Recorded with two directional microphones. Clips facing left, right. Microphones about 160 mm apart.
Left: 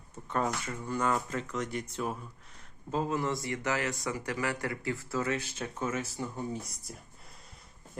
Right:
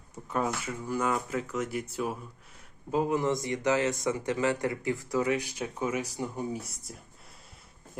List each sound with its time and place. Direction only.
0.3 s speech: 5° right (ahead or behind)
6.9 s speech: centre (ahead or behind)